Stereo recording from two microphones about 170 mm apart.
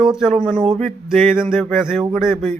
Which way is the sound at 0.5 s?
35° right (ahead or behind).